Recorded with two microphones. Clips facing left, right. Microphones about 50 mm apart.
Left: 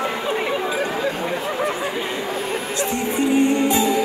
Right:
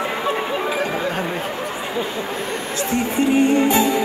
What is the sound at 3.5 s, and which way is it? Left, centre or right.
Music, right.